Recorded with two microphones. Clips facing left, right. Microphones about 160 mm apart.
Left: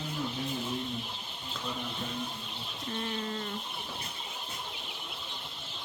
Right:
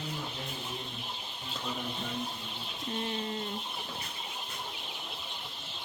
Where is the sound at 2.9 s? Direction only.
25° right (ahead or behind).